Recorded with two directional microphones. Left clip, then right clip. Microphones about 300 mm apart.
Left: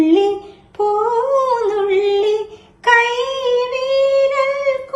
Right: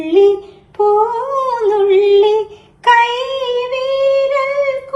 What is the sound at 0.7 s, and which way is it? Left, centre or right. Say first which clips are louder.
Humming: right 3 dB; centre.